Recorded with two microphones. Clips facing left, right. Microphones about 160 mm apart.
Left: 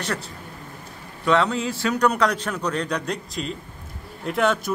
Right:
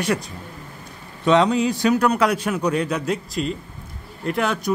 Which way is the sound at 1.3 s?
15° right (ahead or behind).